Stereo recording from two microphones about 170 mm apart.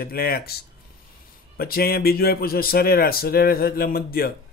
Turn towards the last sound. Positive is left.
turn(degrees=65)  # may be behind; listen again after turning